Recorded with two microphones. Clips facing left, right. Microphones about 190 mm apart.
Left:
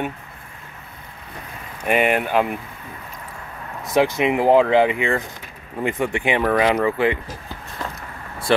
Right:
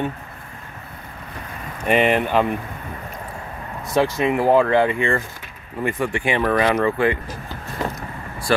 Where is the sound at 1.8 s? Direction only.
5° left (ahead or behind).